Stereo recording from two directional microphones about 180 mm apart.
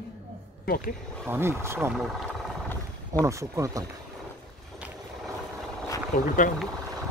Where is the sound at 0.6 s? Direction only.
50° left (ahead or behind).